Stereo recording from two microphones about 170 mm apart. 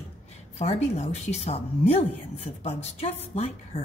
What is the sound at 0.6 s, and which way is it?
A woman's voice, 40° left (ahead or behind).